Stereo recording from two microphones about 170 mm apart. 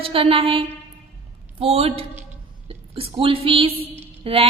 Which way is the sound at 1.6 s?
35° right (ahead or behind).